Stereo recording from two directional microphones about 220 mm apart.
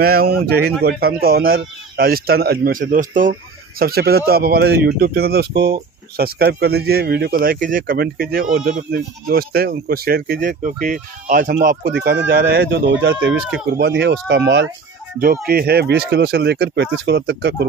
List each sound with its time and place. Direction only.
0.0 s speech: 45° right (ahead or behind)